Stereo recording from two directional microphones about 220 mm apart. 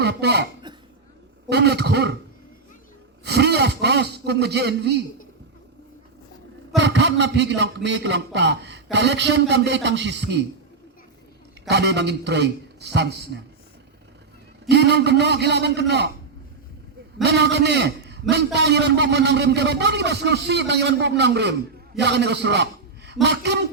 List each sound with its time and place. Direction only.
0.0 s speech: 50° right (ahead or behind)
0.7 s cough: 20° right (ahead or behind)
1.5 s a man's voice: 50° right (ahead or behind)
3.2 s a man's voice: 50° right (ahead or behind)
6.7 s a man's voice: 55° right (ahead or behind)
11.7 s a man's voice: 50° right (ahead or behind)
14.7 s a man's voice: 50° right (ahead or behind)
17.2 s a man's voice: 50° right (ahead or behind)